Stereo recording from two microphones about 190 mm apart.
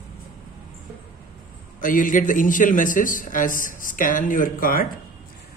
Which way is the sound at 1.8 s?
45° left (ahead or behind).